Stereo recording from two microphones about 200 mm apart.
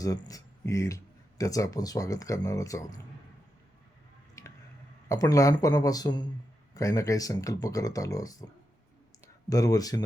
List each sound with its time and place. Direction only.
0.0 s speech: 15° left (ahead or behind)
4.4 s squish: 15° left (ahead or behind)
5.0 s speech: 15° left (ahead or behind)
9.5 s speech: 15° left (ahead or behind)